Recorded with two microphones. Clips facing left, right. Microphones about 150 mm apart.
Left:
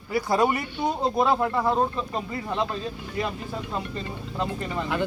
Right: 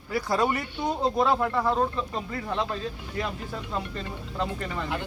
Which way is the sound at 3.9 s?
15° left (ahead or behind).